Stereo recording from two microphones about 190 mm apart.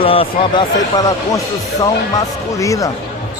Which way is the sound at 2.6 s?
15° left (ahead or behind).